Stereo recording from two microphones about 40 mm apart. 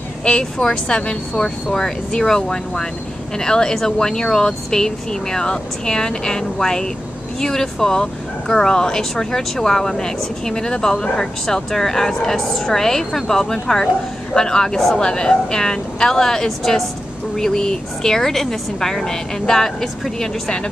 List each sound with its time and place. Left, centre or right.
0.2 s speech: centre